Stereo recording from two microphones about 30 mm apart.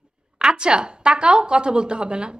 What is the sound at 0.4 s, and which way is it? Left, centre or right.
A woman's voice, right.